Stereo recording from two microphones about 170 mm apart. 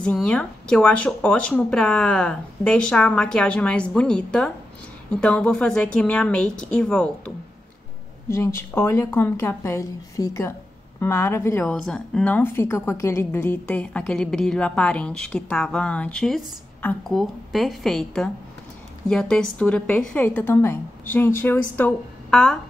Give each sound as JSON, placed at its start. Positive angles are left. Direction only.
{"t": 0.0, "sound": "a woman's voice", "side_deg": 5}